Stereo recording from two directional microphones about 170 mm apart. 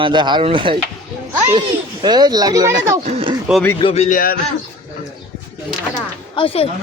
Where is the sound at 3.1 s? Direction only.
35° right (ahead or behind).